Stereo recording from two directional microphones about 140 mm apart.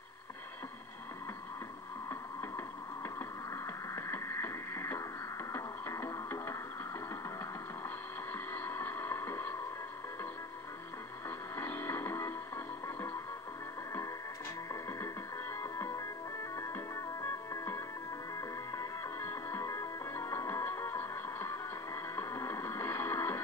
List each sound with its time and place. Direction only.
2.0 s a sound: 15° left (ahead or behind)
5.5 s music: 20° left (ahead or behind)
8.3 s music: 15° left (ahead or behind)
11.2 s music: 15° left (ahead or behind)
14.7 s music: 20° left (ahead or behind)